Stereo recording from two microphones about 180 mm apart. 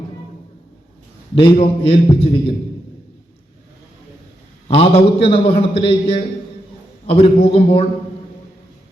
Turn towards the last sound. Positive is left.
turn(degrees=35)  # may be behind; listen again after turning